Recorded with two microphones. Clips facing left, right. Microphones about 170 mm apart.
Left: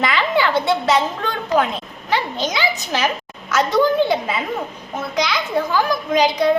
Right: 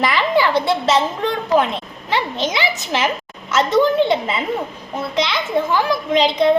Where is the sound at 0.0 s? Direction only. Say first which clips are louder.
Right 2 dB; 25° right (ahead or behind).